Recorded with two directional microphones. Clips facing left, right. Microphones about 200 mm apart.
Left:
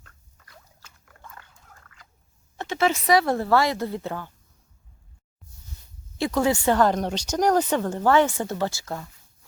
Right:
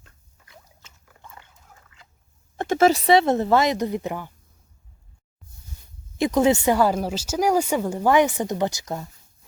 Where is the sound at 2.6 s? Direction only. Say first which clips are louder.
Right 6 dB; 45° right (ahead or behind); by 4.3 s 15° right (ahead or behind).